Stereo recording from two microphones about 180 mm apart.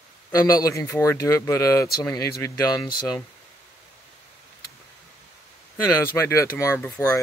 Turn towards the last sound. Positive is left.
turn(degrees=10)  # may be behind; listen again after turning